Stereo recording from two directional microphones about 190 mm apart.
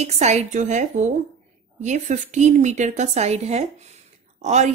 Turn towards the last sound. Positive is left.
turn(degrees=-35)  # may be behind; listen again after turning